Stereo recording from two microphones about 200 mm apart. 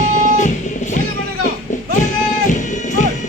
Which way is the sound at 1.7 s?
35° left (ahead or behind).